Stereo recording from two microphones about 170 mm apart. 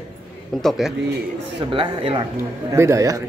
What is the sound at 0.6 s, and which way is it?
Speech, centre (ahead or behind).